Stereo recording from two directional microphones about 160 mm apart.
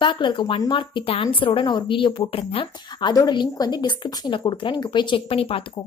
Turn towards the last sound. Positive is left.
turn(degrees=35)  # may be behind; listen again after turning